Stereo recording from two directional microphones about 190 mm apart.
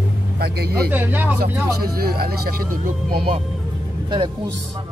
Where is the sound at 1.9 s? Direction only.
55° right (ahead or behind).